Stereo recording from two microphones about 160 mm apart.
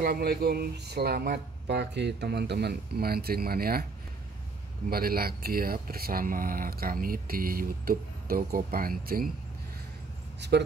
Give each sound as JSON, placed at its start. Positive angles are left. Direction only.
{"t": 0.0, "sound": "speech", "side_deg": -75}
{"t": 4.8, "sound": "speech", "side_deg": -70}
{"t": 10.4, "sound": "speech", "side_deg": -90}